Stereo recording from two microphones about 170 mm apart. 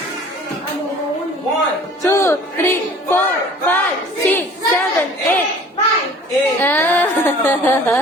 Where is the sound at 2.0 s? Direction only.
15° left (ahead or behind).